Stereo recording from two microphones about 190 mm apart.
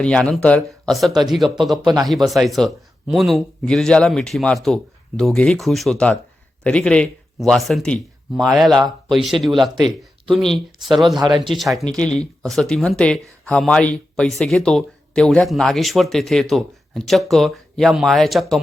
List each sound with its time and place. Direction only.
0.0 s speech: 5° left (ahead or behind)
11.1 s speech: 20° right (ahead or behind)
11.5 s speech: centre (ahead or behind)